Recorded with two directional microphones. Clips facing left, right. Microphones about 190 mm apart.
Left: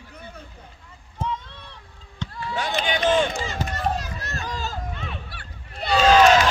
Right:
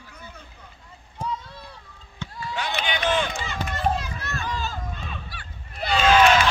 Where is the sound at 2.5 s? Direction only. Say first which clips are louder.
Left 3 dB; 45° left (ahead or behind).